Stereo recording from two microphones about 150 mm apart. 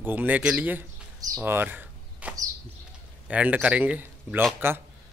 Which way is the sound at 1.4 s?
15° right (ahead or behind).